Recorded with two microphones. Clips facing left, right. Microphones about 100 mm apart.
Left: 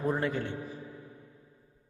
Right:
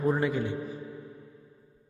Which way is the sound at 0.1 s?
5° right (ahead or behind).